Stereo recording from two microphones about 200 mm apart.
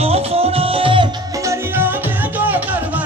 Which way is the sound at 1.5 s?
10° right (ahead or behind).